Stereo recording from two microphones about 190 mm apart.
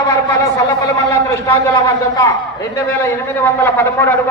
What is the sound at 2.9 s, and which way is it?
A man's voice, 10° left (ahead or behind).